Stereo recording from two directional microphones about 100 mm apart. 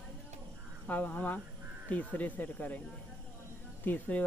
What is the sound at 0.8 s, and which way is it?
Speech, 15° left (ahead or behind).